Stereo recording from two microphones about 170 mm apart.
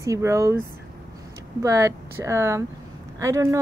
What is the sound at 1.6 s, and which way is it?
A woman's voice, 20° right (ahead or behind).